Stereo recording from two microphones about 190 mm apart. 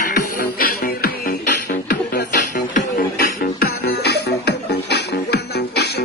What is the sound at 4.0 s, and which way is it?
Music, 60° left (ahead or behind).